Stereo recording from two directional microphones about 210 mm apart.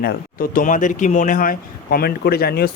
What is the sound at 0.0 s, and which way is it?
Speech, 45° left (ahead or behind).